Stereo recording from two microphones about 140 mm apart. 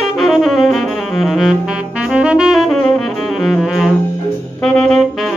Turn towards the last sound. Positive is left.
turn(degrees=5)  # may be behind; listen again after turning